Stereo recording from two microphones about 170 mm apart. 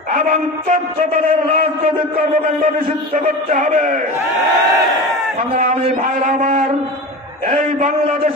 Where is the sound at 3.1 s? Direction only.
45° right (ahead or behind).